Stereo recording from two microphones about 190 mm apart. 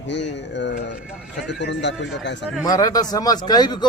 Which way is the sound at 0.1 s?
70° left (ahead or behind).